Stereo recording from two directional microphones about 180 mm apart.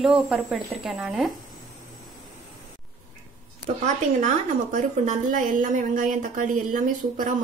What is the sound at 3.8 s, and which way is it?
A woman's voice, 40° right (ahead or behind).